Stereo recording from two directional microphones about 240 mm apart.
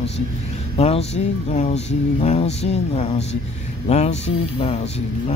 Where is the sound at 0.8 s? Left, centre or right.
Left.